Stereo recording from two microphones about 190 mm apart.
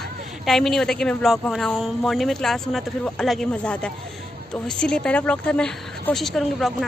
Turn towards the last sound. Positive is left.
turn(degrees=0)  # may be behind; listen again after turning